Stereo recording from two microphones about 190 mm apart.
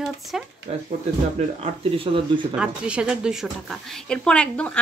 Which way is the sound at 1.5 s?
30° right (ahead or behind).